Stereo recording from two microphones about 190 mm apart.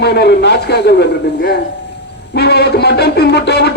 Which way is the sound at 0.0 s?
60° left (ahead or behind).